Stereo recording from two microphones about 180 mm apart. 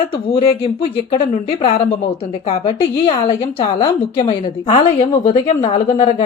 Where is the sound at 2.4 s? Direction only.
30° left (ahead or behind).